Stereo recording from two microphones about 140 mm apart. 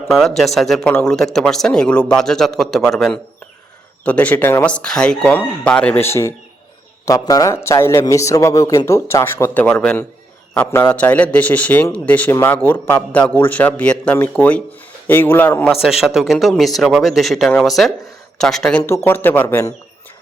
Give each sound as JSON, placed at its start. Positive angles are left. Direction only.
{"t": 0.1, "sound": "a man's voice", "side_deg": 0}
{"t": 15.7, "sound": "speech", "side_deg": -5}
{"t": 18.8, "sound": "speech", "side_deg": 15}